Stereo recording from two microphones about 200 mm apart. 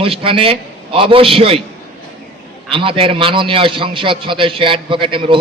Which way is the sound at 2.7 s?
25° right (ahead or behind).